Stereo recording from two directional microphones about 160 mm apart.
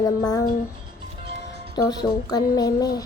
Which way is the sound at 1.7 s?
25° left (ahead or behind).